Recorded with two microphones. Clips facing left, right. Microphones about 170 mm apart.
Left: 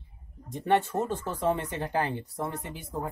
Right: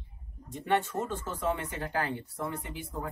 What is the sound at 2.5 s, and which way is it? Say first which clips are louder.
Speech: left 3 dB; 40° left (ahead or behind).